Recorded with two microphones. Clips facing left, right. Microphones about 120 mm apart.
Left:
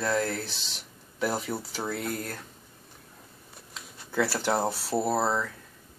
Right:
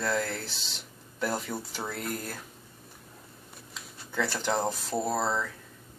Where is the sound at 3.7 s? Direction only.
5° left (ahead or behind).